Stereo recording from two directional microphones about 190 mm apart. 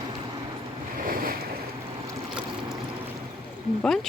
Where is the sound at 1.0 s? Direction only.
50° right (ahead or behind).